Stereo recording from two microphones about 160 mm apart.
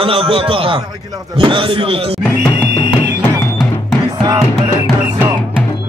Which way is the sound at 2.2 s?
10° left (ahead or behind).